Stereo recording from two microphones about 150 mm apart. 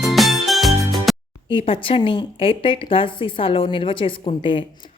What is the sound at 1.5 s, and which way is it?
A woman's voice, 35° left (ahead or behind).